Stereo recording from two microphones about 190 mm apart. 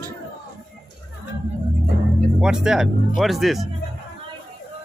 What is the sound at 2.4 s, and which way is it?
Speech, 5° right (ahead or behind).